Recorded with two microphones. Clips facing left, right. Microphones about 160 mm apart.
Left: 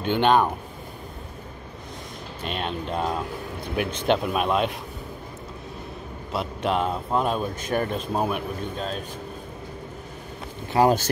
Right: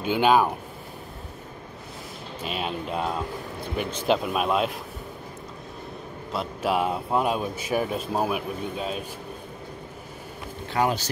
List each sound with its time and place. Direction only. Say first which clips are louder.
0.0 s speech: even; 5° right (ahead or behind)
2.4 s speech: left 1 dB; 5° right (ahead or behind)
6.3 s speech: even; 5° right (ahead or behind)
10.8 s speech: left 5 dB; 40° left (ahead or behind)